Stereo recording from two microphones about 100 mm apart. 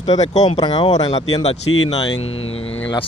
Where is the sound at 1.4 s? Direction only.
90° left.